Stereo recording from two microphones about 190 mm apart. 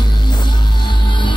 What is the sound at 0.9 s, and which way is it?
Music, 25° left (ahead or behind).